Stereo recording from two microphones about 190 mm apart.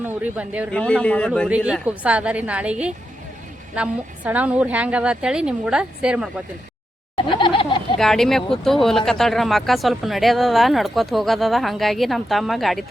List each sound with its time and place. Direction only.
0.0 s a woman's voice: 5° right (ahead or behind)
0.7 s speech: 5° left (ahead or behind)
1.5 s a woman's voice: 5° right (ahead or behind)
7.2 s a sound: 25° left (ahead or behind)
7.9 s speech: centre (ahead or behind)